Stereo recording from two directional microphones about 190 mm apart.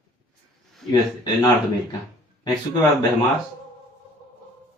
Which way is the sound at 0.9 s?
20° left (ahead or behind).